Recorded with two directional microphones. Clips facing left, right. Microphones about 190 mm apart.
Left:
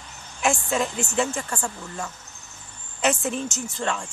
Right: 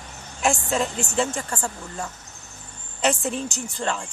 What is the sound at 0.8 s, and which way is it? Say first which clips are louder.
Music: even; centre (ahead or behind).